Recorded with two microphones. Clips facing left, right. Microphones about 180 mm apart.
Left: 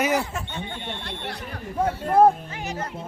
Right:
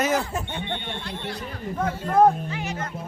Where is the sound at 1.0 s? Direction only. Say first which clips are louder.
Right 1 dB; 65° left (ahead or behind).